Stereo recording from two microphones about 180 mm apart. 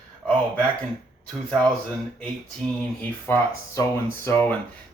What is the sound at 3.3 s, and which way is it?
Speech, 10° left (ahead or behind).